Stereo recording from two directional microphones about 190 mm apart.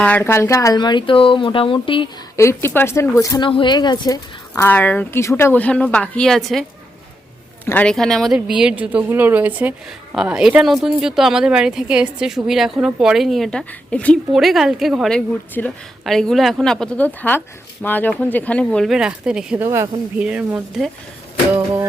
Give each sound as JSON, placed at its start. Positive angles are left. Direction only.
{"t": 0.0, "sound": "speech", "side_deg": 10}
{"t": 2.3, "sound": "speech", "side_deg": 15}
{"t": 19.6, "sound": "speech", "side_deg": -15}
{"t": 21.5, "sound": "speech", "side_deg": -15}